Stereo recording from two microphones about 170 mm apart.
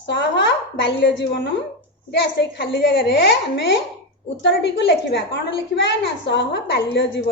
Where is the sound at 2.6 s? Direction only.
85° left.